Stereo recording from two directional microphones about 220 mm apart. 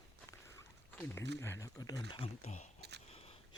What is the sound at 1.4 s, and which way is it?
Speech, 15° left (ahead or behind).